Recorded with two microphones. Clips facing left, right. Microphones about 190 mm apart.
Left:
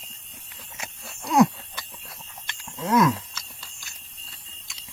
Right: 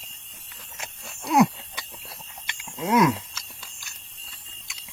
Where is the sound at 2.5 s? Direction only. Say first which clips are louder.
Even; 15° right (ahead or behind).